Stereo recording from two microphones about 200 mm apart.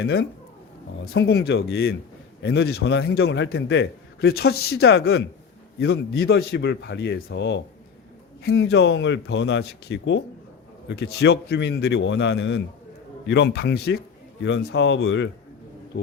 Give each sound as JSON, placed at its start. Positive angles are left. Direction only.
{"t": 0.0, "sound": "a man's voice", "side_deg": 50}
{"t": 14.4, "sound": "speech", "side_deg": 70}